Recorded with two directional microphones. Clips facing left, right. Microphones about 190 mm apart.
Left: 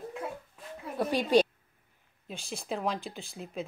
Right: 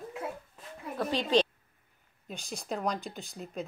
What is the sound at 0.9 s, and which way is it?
A woman's voice, 10° left (ahead or behind).